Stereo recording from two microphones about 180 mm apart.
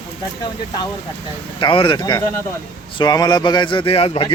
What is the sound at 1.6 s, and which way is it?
A man's voice, 30° left (ahead or behind).